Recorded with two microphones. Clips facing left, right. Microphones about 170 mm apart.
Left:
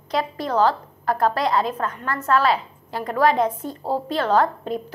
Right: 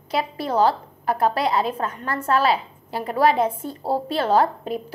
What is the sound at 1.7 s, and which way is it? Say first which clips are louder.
A woman's voice: even; 30° right (ahead or behind).